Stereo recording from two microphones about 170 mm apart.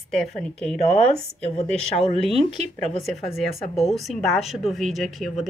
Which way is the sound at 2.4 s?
40° right (ahead or behind).